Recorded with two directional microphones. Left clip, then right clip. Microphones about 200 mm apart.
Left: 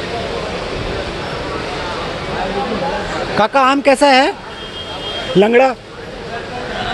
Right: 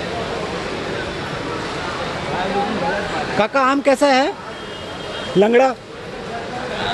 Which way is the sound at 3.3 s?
10° left (ahead or behind).